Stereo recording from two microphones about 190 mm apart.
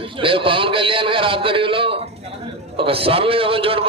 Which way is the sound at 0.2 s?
25° right (ahead or behind).